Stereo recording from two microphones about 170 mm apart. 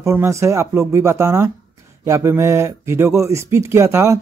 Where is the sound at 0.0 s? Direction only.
15° right (ahead or behind).